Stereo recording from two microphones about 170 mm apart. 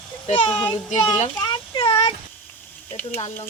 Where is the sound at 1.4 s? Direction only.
30° left (ahead or behind).